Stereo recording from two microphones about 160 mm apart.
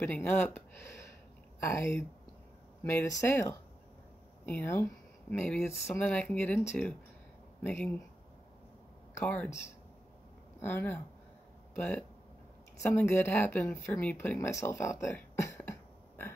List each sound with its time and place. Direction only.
0.0 s speech: 10° left (ahead or behind)
9.2 s speech: 10° left (ahead or behind)
10.6 s speech: 15° left (ahead or behind)